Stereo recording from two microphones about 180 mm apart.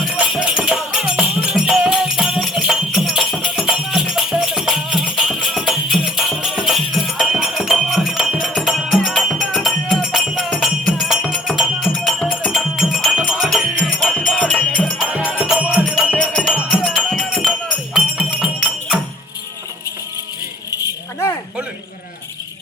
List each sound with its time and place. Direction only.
0.2 s music: centre (ahead or behind)
20.7 s rattle: 20° left (ahead or behind)